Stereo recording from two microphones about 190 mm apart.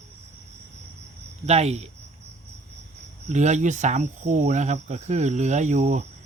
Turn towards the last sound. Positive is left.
turn(degrees=-40)  # may be behind; listen again after turning